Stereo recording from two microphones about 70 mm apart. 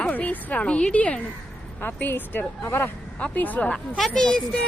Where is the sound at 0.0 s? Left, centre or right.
Left.